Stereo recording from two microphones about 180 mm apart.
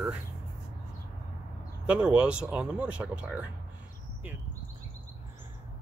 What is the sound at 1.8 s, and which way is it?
Speech, 5° right (ahead or behind).